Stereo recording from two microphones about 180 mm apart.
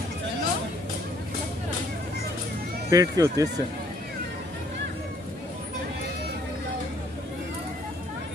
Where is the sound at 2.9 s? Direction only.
20° right (ahead or behind).